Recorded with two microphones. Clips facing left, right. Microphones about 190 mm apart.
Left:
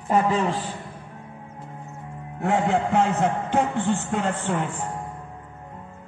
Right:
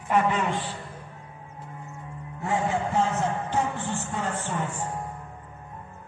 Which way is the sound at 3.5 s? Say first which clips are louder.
Left 5 dB; 60° left (ahead or behind).